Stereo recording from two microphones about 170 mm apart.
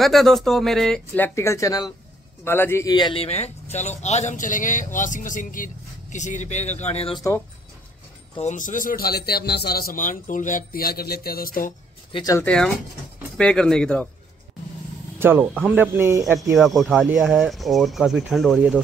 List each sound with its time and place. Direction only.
0.0 s speech: centre (ahead or behind); by 7.2 s 35° left (ahead or behind)
8.4 s a man's voice: 45° left (ahead or behind)
12.1 s speech: 20° left (ahead or behind)
12.4 s speech: 5° left (ahead or behind)
15.1 s speech: 10° right (ahead or behind)
16.5 s speech: centre (ahead or behind)